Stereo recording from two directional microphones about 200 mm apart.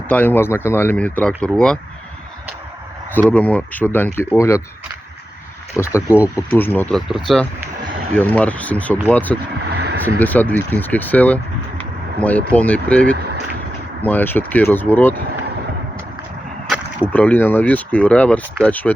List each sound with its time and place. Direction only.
0.1 s speech: 10° left (ahead or behind)
3.1 s speech: 10° left (ahead or behind)
5.8 s speech: 15° left (ahead or behind)
9.7 s vehicle: 55° right (ahead or behind)
10.2 s speech: 10° left (ahead or behind)
13.1 s a sound: 55° right (ahead or behind)
14.0 s speech: 10° left (ahead or behind)
17.1 s speech: 10° left (ahead or behind)